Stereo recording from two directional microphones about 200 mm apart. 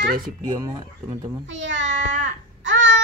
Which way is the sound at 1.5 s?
65° right (ahead or behind).